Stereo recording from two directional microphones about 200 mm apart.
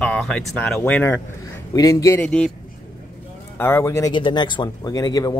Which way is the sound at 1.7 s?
20° left (ahead or behind).